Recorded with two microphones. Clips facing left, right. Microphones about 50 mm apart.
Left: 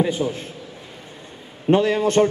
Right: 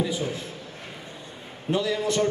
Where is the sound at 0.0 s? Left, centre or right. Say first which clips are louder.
Left 6 dB; left.